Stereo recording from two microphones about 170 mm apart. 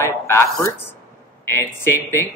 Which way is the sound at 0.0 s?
15° left (ahead or behind).